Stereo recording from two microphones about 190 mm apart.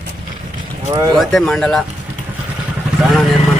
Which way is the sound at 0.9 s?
20° right (ahead or behind).